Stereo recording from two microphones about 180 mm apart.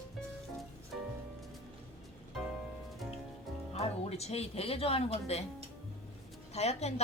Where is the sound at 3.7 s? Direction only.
35° left (ahead or behind).